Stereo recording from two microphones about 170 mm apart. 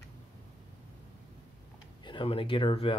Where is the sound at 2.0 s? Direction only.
30° left (ahead or behind).